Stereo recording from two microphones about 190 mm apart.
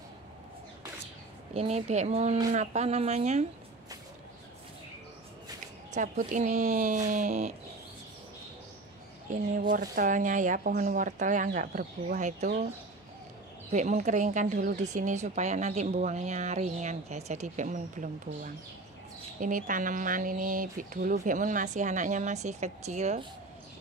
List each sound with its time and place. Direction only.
1.5 s speech: 35° right (ahead or behind)
5.9 s speech: 40° right (ahead or behind)
9.6 s speech: 45° right (ahead or behind)
13.7 s speech: 40° right (ahead or behind)